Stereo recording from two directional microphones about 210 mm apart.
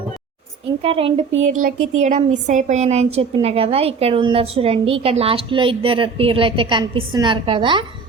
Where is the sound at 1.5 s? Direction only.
35° right (ahead or behind).